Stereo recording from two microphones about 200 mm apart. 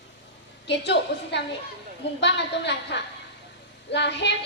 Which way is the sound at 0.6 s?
60° left (ahead or behind).